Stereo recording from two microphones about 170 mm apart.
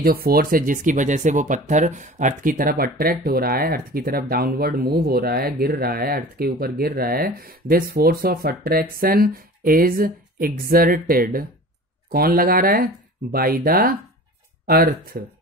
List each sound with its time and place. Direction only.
0.0 s speech: 60° right (ahead or behind)